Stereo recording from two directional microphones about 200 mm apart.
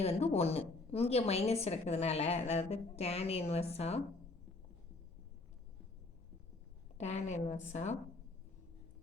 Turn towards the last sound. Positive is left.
turn(degrees=35)  # may be behind; listen again after turning